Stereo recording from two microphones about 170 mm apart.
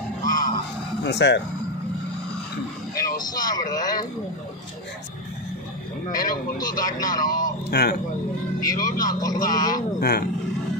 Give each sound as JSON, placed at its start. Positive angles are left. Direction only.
{"t": 0.2, "sound": "a sound", "side_deg": 50}
{"t": 1.0, "sound": "speech", "side_deg": 90}
{"t": 2.9, "sound": "speech", "side_deg": 20}
{"t": 6.6, "sound": "speech", "side_deg": 20}
{"t": 7.4, "sound": "speech", "side_deg": 65}
{"t": 8.6, "sound": "speech", "side_deg": 20}
{"t": 9.9, "sound": "speech", "side_deg": 65}